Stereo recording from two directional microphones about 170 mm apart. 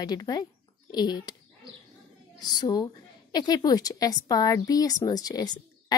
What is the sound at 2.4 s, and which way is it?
A woman's voice, 25° left (ahead or behind).